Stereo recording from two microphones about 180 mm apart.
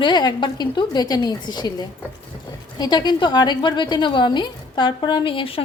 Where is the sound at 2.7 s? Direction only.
25° left (ahead or behind).